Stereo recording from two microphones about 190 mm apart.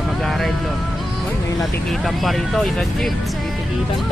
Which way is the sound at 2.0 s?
Centre (ahead or behind).